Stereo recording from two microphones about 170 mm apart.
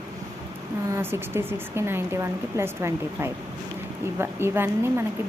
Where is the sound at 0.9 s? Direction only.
15° right (ahead or behind).